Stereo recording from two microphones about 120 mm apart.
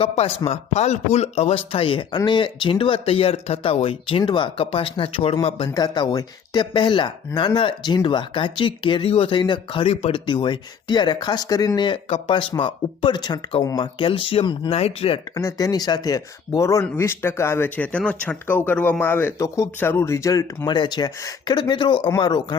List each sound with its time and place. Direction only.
0.0 s speech: 60° left (ahead or behind)
5.7 s speech: 35° left (ahead or behind)
9.8 s speech: 60° left (ahead or behind)
10.2 s speech: 40° left (ahead or behind)
15.4 s speech: 30° left (ahead or behind)
20.7 s speech: 40° left (ahead or behind)